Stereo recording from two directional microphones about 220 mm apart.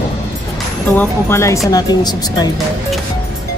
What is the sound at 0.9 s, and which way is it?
Speech, 10° left (ahead or behind).